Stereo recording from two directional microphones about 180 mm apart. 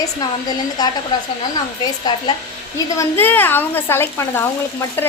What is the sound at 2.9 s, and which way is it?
Speech, 10° left (ahead or behind).